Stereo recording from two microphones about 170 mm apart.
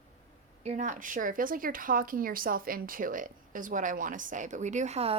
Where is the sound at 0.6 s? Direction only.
40° right (ahead or behind).